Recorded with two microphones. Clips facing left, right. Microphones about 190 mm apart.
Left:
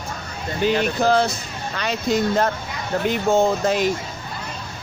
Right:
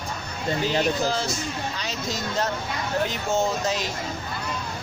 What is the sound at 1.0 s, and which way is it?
Speech, 60° left (ahead or behind).